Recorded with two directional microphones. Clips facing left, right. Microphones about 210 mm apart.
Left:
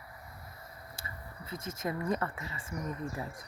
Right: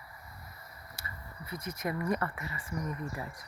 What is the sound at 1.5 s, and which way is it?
Speech, 25° left (ahead or behind).